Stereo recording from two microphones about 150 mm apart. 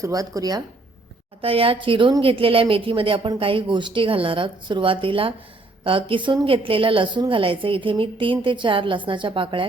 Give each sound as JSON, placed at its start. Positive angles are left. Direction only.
{"t": 0.0, "sound": "speech", "side_deg": -25}
{"t": 1.4, "sound": "speech", "side_deg": -40}